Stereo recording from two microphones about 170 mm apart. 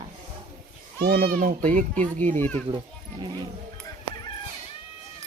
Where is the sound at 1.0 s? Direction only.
65° right (ahead or behind); by 2.1 s 45° right (ahead or behind).